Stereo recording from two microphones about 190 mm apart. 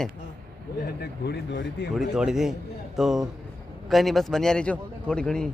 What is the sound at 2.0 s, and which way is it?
Speech, centre (ahead or behind).